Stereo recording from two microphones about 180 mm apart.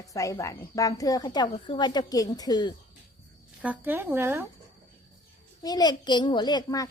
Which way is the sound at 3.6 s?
10° right (ahead or behind).